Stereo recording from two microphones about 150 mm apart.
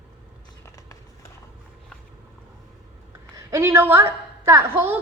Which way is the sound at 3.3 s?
20° right (ahead or behind).